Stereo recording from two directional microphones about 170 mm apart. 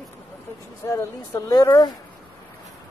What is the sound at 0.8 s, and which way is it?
Speech, 15° left (ahead or behind).